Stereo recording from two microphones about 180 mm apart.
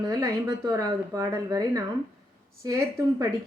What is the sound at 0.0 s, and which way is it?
Speech, 20° right (ahead or behind).